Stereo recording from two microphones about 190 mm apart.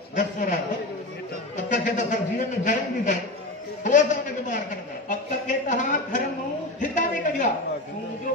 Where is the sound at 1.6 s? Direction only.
40° left (ahead or behind).